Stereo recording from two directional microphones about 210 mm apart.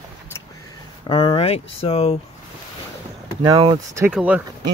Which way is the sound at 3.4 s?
20° right (ahead or behind).